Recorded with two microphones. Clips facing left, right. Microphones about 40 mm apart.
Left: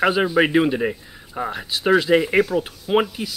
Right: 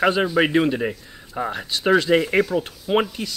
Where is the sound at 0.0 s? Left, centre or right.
Centre.